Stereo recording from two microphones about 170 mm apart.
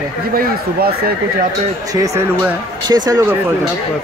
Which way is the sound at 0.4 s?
65° right (ahead or behind).